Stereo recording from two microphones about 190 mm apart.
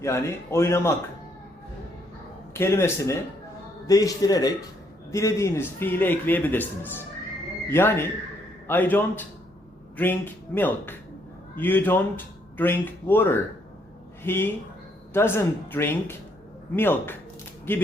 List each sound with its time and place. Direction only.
0.0 s a man's voice: 15° left (ahead or behind)
2.6 s a man's voice: 15° left (ahead or behind)